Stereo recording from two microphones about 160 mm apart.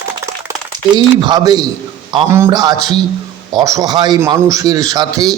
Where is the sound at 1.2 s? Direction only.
25° right (ahead or behind).